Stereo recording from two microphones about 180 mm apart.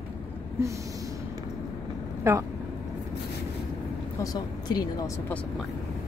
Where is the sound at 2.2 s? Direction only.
15° right (ahead or behind).